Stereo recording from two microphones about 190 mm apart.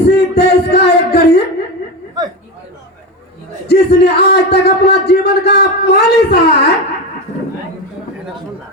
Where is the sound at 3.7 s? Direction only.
60° left (ahead or behind).